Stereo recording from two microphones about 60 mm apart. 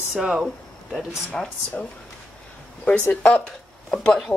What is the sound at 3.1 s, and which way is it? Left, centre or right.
Speech, left.